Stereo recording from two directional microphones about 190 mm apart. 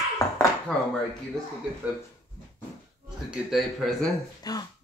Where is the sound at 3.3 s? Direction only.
Centre (ahead or behind).